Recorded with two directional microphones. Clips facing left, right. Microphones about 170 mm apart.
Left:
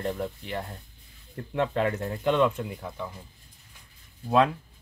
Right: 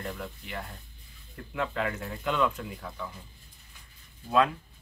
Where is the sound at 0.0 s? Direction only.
35° left (ahead or behind).